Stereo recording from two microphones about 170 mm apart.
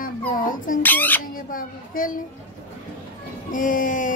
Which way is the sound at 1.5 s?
55° left (ahead or behind).